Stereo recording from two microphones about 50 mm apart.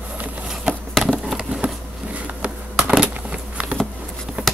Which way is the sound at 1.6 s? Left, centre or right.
Right.